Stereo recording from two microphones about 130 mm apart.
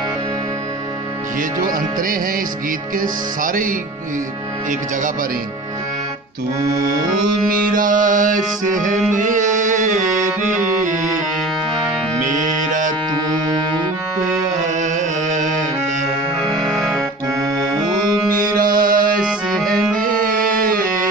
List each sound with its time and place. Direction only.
3.0 s music: 90° right
7.4 s music: 90° right
9.1 s carnatic music: 80° right
10.8 s music: 80° right
14.6 s music: 70° right (ahead or behind)
16.9 s accordion: 25° right (ahead or behind)
18.6 s mantra: 90° right
19.5 s music: 5° left (ahead or behind)
20.6 s music: 90° right